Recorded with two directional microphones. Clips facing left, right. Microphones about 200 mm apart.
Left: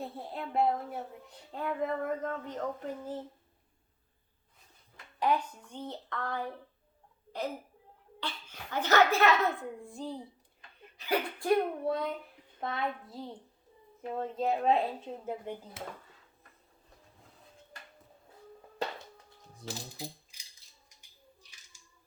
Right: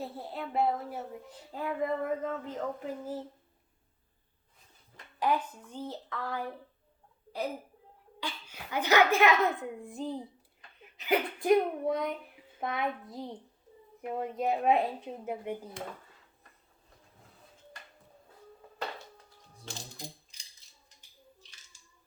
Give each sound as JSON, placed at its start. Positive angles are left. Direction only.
{"t": 0.0, "sound": "speech", "side_deg": -5}
{"t": 5.2, "sound": "speech", "side_deg": -5}
{"t": 8.2, "sound": "a child's voice", "side_deg": -10}
{"t": 19.6, "sound": "speech", "side_deg": 5}